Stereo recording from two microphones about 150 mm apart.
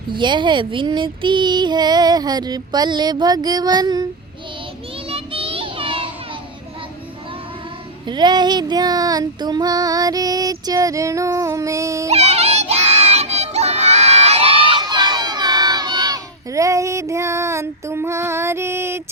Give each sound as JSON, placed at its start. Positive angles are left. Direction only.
{"t": 0.1, "sound": "female singing", "side_deg": -30}
{"t": 5.0, "sound": "child singing", "side_deg": -40}
{"t": 8.0, "sound": "female singing", "side_deg": -30}
{"t": 12.0, "sound": "crowd", "side_deg": -45}